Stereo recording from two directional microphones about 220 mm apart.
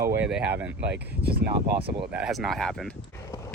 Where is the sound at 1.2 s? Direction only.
45° right (ahead or behind).